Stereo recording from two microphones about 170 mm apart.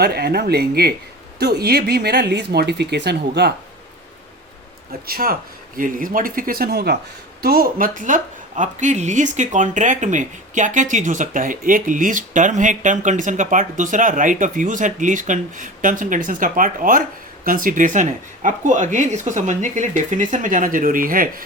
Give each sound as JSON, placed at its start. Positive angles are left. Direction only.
{"t": 0.0, "sound": "speech", "side_deg": -70}
{"t": 5.0, "sound": "speech", "side_deg": -60}